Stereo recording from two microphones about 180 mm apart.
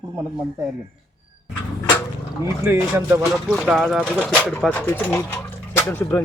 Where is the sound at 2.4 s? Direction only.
15° right (ahead or behind).